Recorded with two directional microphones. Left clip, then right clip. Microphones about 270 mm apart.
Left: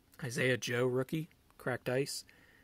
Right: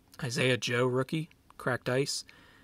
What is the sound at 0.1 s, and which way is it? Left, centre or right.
Speech, centre.